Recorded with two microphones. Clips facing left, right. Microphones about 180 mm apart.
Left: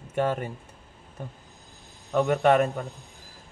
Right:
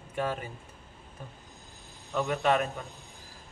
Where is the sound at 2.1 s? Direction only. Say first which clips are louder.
Left 6 dB; 50° left (ahead or behind).